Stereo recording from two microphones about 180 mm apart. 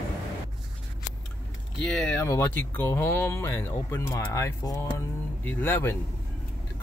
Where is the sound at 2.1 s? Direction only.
15° left (ahead or behind).